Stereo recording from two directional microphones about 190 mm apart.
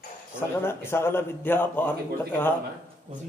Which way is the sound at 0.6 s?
10° left (ahead or behind).